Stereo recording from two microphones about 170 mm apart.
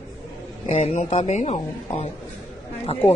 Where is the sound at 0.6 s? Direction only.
45° left (ahead or behind).